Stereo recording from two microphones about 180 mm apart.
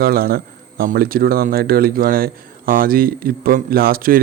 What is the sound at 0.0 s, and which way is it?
Speech, 55° right (ahead or behind).